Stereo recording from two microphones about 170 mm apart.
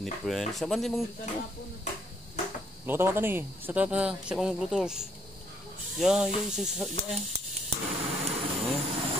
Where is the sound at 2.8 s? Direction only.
10° right (ahead or behind).